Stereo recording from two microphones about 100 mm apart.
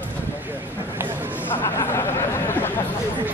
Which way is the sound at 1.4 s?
25° left (ahead or behind).